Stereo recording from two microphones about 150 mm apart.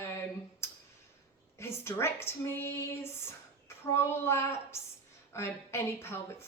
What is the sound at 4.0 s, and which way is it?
A woman's voice, 15° left (ahead or behind).